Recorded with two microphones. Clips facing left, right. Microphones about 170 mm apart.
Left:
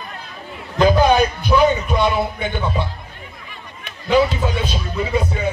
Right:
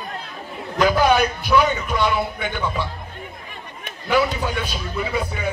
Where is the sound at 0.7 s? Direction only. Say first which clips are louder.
Left 3 dB; 25° left (ahead or behind).